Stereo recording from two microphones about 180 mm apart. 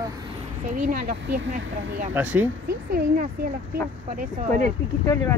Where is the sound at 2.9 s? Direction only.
55° right (ahead or behind).